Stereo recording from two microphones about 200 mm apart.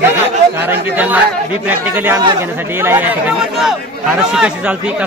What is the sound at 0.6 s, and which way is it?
Speech, 10° right (ahead or behind).